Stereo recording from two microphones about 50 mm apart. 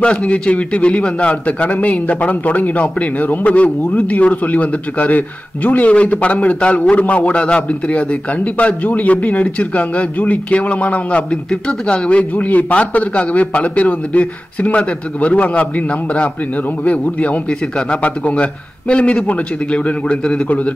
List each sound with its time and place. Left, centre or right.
0.0 s a man's voice: left
16.8 s a man's voice: left